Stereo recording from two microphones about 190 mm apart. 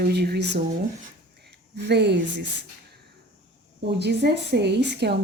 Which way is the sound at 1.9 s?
65° right (ahead or behind).